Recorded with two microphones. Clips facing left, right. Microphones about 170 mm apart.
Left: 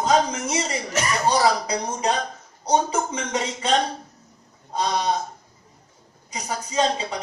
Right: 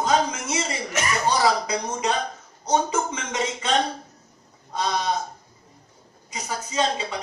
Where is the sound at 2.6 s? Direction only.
35° left (ahead or behind).